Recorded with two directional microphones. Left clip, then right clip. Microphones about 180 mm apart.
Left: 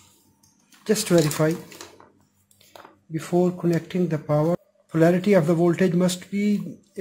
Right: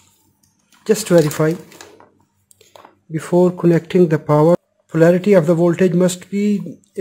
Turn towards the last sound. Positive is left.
turn(degrees=-35)  # may be behind; listen again after turning